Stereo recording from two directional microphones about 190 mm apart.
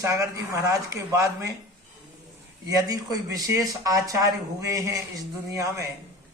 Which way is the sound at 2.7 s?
20° right (ahead or behind).